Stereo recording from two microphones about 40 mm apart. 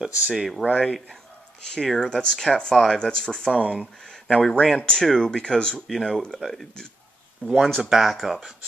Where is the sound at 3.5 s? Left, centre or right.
Right.